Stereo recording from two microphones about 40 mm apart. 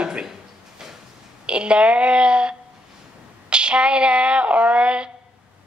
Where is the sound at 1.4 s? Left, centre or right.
Right.